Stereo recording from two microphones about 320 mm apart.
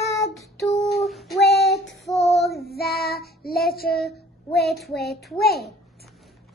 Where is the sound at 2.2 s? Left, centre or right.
Centre.